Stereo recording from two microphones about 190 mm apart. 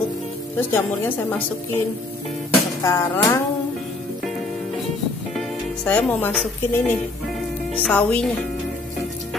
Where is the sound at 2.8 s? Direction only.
15° left (ahead or behind).